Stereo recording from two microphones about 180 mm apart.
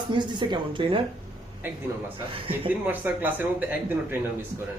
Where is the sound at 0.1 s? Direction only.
25° right (ahead or behind).